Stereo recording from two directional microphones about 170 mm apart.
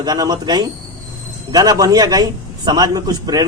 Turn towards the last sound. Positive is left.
turn(degrees=-20)  # may be behind; listen again after turning